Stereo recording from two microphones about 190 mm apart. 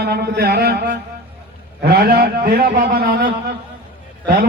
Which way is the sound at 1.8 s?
55° right (ahead or behind).